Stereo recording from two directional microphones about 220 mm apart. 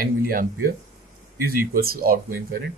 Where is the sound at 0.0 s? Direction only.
40° right (ahead or behind).